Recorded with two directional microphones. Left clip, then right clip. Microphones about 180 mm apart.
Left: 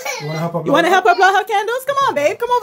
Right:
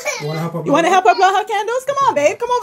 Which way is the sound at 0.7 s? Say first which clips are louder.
Even; 10° left (ahead or behind).